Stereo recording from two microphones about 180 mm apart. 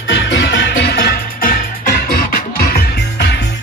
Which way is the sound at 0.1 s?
85° left.